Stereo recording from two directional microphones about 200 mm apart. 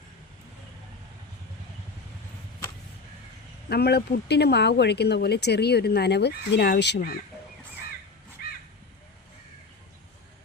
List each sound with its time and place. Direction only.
3.7 s speech: 55° left (ahead or behind)